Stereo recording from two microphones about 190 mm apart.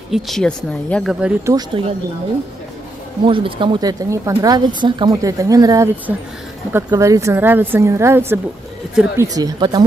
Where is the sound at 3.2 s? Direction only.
25° right (ahead or behind).